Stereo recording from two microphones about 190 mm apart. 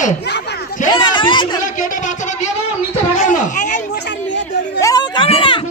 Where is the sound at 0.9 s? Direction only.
25° left (ahead or behind).